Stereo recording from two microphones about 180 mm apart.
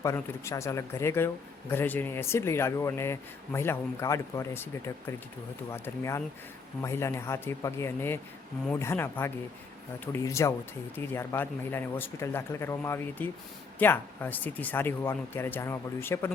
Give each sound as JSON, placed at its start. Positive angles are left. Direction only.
{"t": 0.0, "sound": "speech", "side_deg": 15}